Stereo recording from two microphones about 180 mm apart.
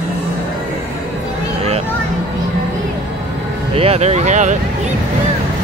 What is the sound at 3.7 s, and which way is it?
Speech, 35° right (ahead or behind).